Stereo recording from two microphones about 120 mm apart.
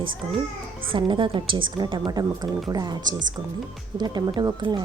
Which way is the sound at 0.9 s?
45° right (ahead or behind).